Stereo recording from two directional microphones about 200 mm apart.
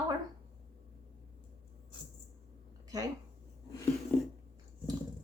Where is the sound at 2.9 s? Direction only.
20° right (ahead or behind).